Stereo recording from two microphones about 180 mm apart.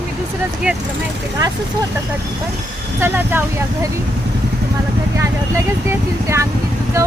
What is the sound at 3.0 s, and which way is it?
Speech, 10° right (ahead or behind).